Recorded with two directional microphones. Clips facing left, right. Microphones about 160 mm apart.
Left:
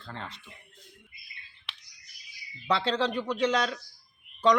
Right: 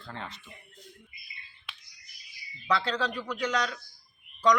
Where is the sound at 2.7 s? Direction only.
25° left (ahead or behind).